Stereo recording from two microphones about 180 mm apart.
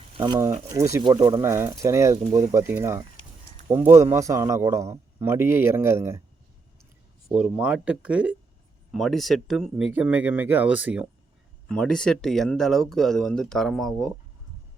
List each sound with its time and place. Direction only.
0.2 s a man's voice: 15° right (ahead or behind)
7.3 s a man's voice: 5° right (ahead or behind)
11.7 s speech: 5° left (ahead or behind)